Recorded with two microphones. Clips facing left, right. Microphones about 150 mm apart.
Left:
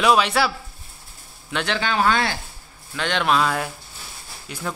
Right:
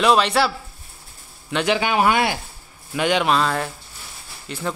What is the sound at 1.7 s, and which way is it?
Speech, 15° right (ahead or behind).